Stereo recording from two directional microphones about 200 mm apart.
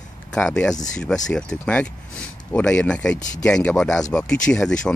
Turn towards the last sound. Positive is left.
turn(degrees=5)  # may be behind; listen again after turning